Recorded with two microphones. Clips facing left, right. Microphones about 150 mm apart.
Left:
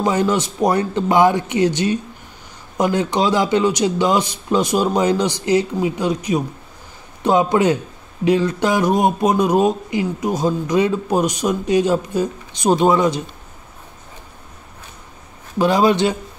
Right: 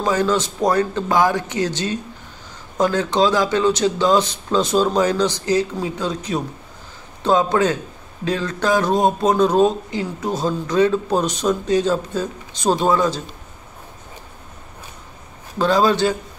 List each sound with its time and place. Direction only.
0.0 s speech: 20° left (ahead or behind)
15.6 s speech: 20° left (ahead or behind)